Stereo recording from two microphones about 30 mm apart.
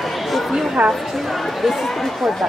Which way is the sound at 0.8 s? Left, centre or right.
Right.